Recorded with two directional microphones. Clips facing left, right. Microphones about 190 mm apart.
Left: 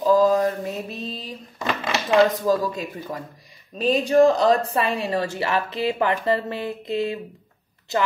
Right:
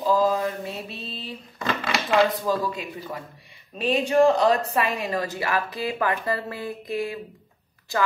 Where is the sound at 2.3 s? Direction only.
45° left (ahead or behind).